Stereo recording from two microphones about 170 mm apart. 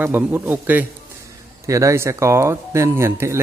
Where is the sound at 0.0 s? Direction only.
10° right (ahead or behind).